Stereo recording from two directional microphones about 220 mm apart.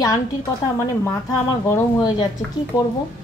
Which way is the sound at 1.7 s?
15° left (ahead or behind).